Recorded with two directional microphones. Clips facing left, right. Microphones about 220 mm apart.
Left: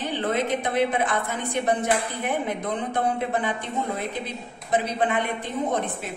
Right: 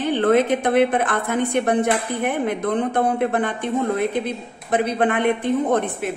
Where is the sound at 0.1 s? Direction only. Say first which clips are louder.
Right 9 dB; 55° right (ahead or behind).